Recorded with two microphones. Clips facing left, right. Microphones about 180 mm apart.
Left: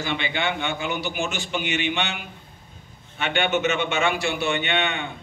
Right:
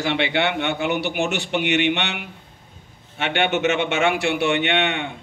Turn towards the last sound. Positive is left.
turn(degrees=-75)  # may be behind; listen again after turning